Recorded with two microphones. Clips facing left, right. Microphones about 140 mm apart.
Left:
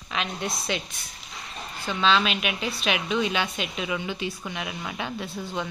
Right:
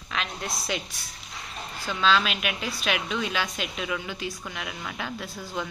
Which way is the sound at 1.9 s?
Centre (ahead or behind).